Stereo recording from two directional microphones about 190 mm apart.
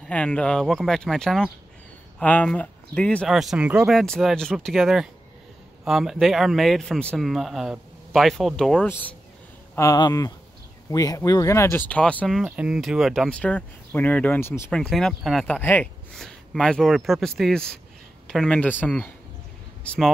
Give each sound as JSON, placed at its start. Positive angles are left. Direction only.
{"t": 0.0, "sound": "speech", "side_deg": 5}
{"t": 9.8, "sound": "speech", "side_deg": 20}